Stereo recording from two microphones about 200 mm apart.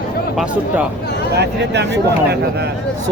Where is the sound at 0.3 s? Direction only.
5° right (ahead or behind).